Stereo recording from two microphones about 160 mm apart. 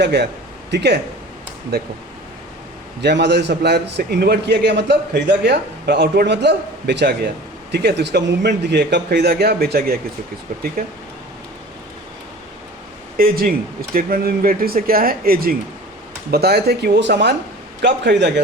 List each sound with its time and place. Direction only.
0.0 s a man's voice: 90° right
3.0 s a man's voice: 90° right; by 10.0 s 70° right (ahead or behind)
10.5 s speech: 50° right (ahead or behind)
13.1 s speech: 65° right (ahead or behind)
16.3 s a man's voice: 85° right